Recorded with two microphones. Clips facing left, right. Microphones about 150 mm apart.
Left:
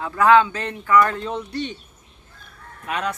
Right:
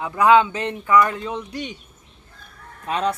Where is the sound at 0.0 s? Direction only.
15° right (ahead or behind).